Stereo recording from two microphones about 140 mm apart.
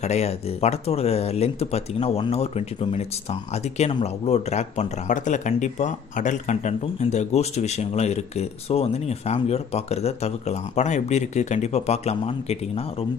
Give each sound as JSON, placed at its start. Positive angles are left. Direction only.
{"t": 0.0, "sound": "speech", "side_deg": 50}